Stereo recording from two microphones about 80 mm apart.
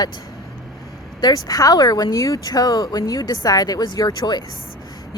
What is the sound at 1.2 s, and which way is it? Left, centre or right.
Speech, left.